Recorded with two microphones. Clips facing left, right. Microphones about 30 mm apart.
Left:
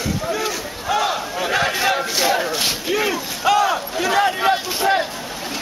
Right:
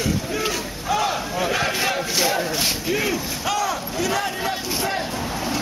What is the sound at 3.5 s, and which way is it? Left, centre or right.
Speech, left.